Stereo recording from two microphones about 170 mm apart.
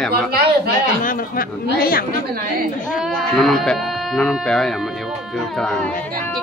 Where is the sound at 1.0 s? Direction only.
55° left (ahead or behind).